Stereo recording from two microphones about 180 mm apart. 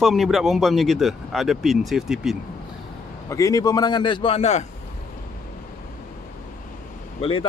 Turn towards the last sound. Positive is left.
turn(degrees=30)  # may be behind; listen again after turning